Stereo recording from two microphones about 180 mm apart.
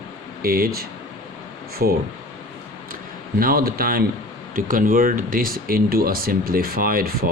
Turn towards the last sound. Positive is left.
turn(degrees=-55)  # may be behind; listen again after turning